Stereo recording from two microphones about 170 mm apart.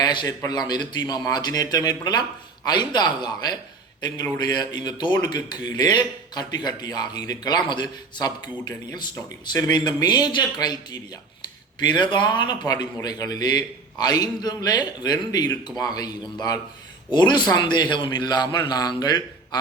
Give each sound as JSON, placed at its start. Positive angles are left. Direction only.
{"t": 0.0, "sound": "speech", "side_deg": 25}